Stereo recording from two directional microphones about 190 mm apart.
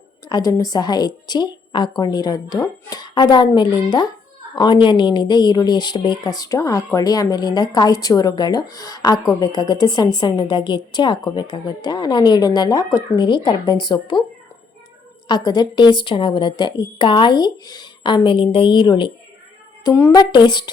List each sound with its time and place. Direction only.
0.3 s speech: 20° left (ahead or behind)
15.3 s speech: 20° left (ahead or behind)